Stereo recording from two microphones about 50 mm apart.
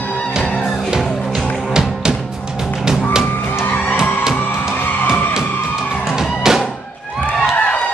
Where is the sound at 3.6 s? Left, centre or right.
Left.